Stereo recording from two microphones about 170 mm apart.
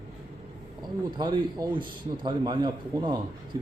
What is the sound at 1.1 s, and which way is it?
A man's voice, 25° right (ahead or behind).